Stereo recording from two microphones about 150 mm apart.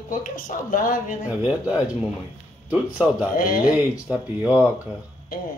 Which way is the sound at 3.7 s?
5° right (ahead or behind).